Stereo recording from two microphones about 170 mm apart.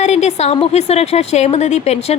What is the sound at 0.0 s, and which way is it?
A woman's voice, 40° left (ahead or behind).